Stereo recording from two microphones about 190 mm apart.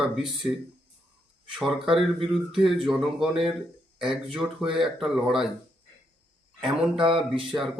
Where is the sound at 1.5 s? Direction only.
5° right (ahead or behind).